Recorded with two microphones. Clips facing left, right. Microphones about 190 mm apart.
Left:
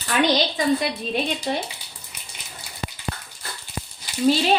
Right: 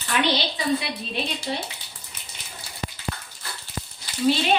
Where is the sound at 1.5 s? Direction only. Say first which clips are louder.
Left 4 dB; 55° left (ahead or behind).